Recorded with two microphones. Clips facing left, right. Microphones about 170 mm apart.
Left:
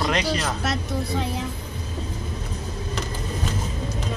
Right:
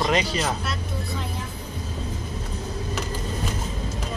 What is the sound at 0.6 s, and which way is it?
Speech, 80° left.